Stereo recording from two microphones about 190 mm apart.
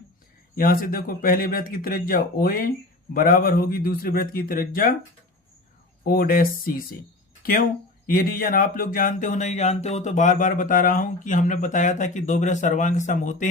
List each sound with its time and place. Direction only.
0.5 s speech: 50° left (ahead or behind)
6.0 s speech: 50° left (ahead or behind)